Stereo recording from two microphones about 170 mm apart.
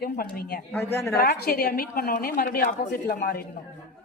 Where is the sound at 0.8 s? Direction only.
15° left (ahead or behind).